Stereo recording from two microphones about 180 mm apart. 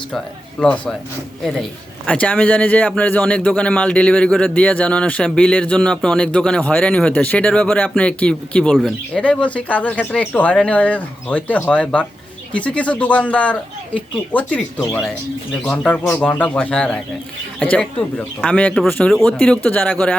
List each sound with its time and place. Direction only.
0.6 s a man's voice: 5° left (ahead or behind)